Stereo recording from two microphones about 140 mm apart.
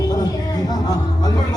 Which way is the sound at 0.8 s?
30° left (ahead or behind).